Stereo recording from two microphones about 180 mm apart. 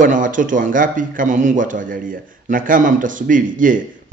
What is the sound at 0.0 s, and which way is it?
A man's voice, 45° right (ahead or behind).